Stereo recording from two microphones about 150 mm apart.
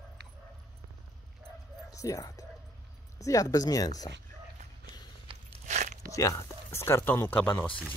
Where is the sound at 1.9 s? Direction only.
20° left (ahead or behind).